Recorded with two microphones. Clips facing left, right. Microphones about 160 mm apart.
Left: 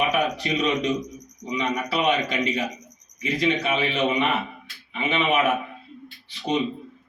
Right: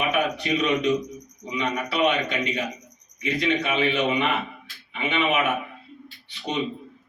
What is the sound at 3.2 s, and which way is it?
A man's voice, 35° left (ahead or behind).